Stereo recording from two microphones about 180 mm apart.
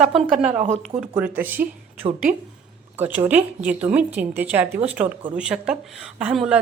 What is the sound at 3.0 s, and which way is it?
Speech, 10° right (ahead or behind).